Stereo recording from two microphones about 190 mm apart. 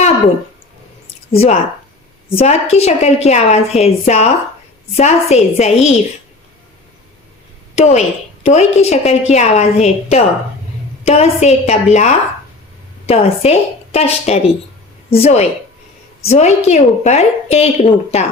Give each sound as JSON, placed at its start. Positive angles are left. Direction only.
{"t": 1.3, "sound": "a woman's voice", "side_deg": 35}
{"t": 7.8, "sound": "a woman's voice", "side_deg": 35}